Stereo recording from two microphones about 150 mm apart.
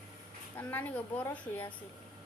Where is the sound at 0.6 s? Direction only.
10° left (ahead or behind).